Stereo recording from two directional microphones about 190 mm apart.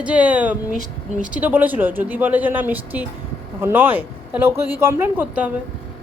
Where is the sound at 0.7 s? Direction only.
40° right (ahead or behind).